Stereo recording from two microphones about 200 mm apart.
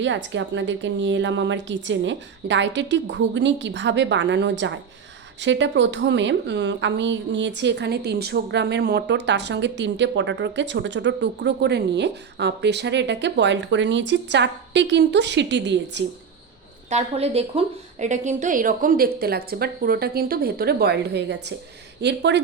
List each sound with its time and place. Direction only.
0.0 s a woman's voice: 65° right (ahead or behind)
16.9 s a woman's voice: 30° right (ahead or behind); by 22.4 s 60° right (ahead or behind)